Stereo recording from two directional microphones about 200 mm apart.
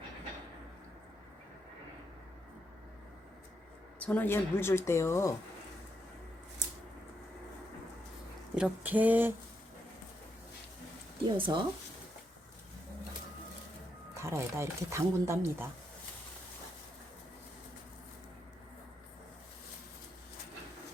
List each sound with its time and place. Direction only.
4.0 s speech: 10° left (ahead or behind)
8.5 s speech: 5° right (ahead or behind)
11.3 s speech: 25° right (ahead or behind)
14.1 s speech: 15° right (ahead or behind)